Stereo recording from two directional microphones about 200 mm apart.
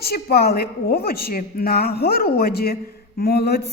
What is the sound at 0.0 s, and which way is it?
A woman's voice, 50° left (ahead or behind).